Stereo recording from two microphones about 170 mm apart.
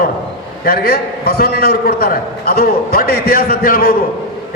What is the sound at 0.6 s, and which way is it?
A man's voice, 60° left (ahead or behind).